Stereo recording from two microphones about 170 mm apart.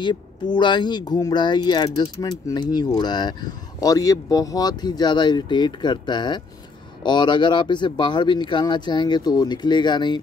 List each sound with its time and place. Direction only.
0.0 s speech: 25° left (ahead or behind)